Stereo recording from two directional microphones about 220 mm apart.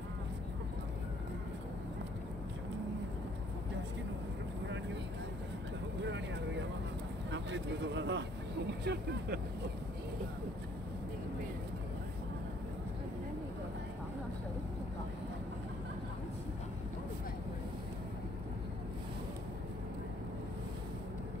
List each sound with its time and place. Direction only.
6.0 s vehicle: 55° right (ahead or behind)
7.2 s speech: 55° right (ahead or behind)